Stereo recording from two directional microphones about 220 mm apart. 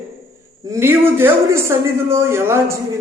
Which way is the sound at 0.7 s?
10° right (ahead or behind).